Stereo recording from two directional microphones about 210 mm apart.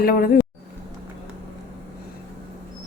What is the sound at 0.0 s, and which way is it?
Speech, 45° left (ahead or behind).